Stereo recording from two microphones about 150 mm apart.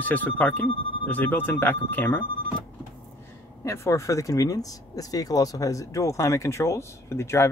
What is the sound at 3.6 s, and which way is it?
Speech, 20° left (ahead or behind).